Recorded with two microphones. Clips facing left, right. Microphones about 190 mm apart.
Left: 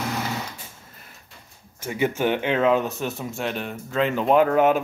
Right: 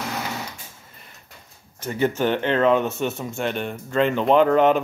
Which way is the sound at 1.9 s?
10° left (ahead or behind).